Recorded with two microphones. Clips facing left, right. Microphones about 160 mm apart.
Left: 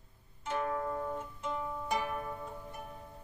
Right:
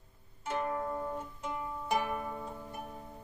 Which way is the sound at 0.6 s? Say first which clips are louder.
Left 1 dB; 15° right (ahead or behind).